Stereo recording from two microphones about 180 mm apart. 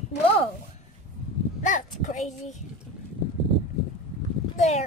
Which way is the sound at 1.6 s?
45° left (ahead or behind).